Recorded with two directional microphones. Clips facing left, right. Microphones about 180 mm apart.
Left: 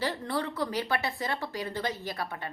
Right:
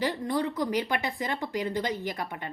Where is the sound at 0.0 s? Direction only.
15° right (ahead or behind).